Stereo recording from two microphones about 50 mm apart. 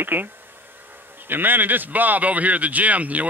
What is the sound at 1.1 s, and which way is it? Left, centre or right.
A man's voice, right.